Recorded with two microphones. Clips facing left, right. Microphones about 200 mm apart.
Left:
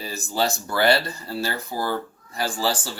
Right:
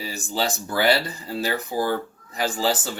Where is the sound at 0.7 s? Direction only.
15° right (ahead or behind).